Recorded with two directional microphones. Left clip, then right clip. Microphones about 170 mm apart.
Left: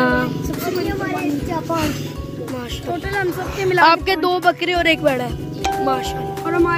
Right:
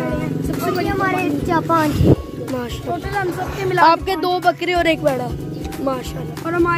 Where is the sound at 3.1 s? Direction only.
65° left (ahead or behind).